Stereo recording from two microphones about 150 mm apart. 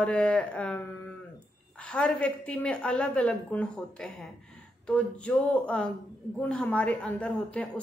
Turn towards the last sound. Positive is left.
turn(degrees=10)  # may be behind; listen again after turning